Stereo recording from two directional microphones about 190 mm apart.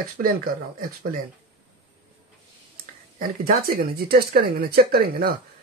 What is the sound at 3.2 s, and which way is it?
Speech, 50° right (ahead or behind).